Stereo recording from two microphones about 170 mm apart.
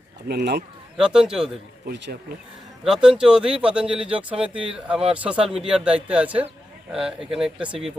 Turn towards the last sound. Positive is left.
turn(degrees=-5)  # may be behind; listen again after turning